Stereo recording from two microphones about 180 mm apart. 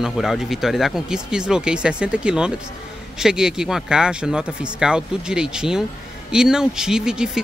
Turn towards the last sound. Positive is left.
turn(degrees=-5)  # may be behind; listen again after turning